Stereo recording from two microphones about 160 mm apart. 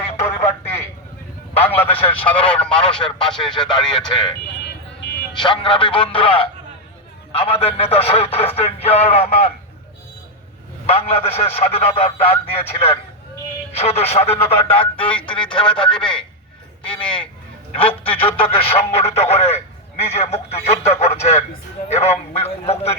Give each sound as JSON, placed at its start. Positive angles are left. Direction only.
{"t": 0.2, "sound": "a sound", "side_deg": 15}
{"t": 1.9, "sound": "speech", "side_deg": 35}
{"t": 2.5, "sound": "speech", "side_deg": 5}
{"t": 5.4, "sound": "a man's voice", "side_deg": 30}
{"t": 10.8, "sound": "a man's voice", "side_deg": 35}